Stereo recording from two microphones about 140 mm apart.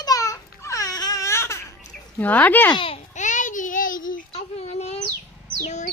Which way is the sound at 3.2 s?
60° left (ahead or behind).